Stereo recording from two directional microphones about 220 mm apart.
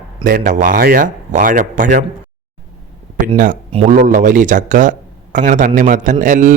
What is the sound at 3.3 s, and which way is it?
Speech, 35° right (ahead or behind).